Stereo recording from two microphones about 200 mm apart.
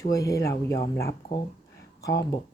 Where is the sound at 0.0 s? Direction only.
15° left (ahead or behind).